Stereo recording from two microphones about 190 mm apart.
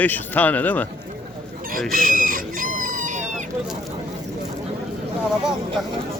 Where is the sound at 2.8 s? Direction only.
45° right (ahead or behind).